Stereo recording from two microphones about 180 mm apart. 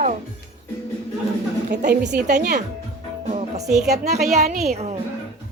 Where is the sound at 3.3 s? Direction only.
40° right (ahead or behind).